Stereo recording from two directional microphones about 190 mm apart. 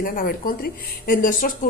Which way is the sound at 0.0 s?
50° left (ahead or behind).